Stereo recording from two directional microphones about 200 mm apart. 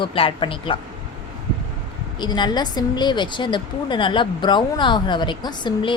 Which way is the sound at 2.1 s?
20° left (ahead or behind).